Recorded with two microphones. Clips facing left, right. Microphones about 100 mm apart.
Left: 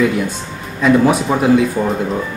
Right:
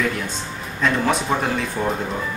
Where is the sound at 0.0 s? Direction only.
5° left (ahead or behind).